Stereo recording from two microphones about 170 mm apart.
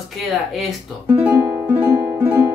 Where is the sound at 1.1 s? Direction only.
15° right (ahead or behind).